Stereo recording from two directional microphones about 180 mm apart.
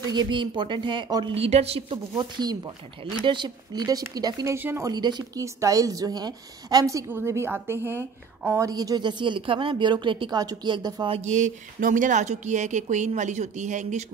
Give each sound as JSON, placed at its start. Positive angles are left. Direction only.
{"t": 0.1, "sound": "speech", "side_deg": -25}
{"t": 11.1, "sound": "speech", "side_deg": -40}